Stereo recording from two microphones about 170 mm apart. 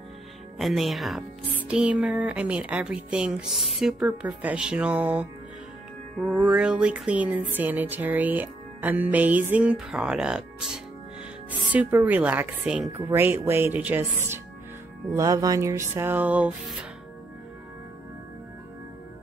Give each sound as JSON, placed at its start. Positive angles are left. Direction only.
{"t": 0.6, "sound": "speech", "side_deg": 0}
{"t": 12.9, "sound": "speech", "side_deg": -15}